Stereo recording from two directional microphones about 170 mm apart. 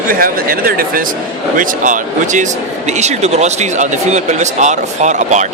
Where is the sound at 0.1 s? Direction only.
55° right (ahead or behind).